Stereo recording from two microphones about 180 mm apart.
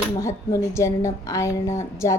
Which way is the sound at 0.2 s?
15° left (ahead or behind).